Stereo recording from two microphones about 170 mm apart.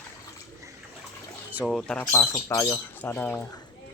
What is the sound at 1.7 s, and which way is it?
Speech, 5° left (ahead or behind).